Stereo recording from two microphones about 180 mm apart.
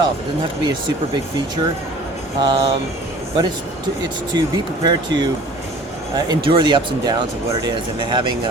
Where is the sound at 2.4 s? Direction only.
25° right (ahead or behind).